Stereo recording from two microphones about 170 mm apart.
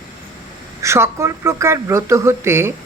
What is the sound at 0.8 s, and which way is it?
Speech, 15° right (ahead or behind).